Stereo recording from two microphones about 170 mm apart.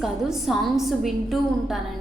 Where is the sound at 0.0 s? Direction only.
Centre (ahead or behind).